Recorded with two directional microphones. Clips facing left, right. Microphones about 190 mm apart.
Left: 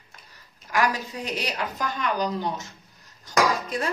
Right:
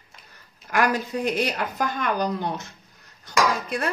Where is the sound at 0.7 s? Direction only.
55° right (ahead or behind).